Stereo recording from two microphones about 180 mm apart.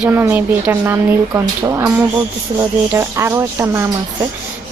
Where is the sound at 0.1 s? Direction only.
10° right (ahead or behind).